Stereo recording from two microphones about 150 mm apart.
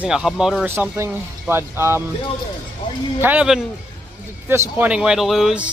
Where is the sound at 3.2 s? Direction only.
10° right (ahead or behind).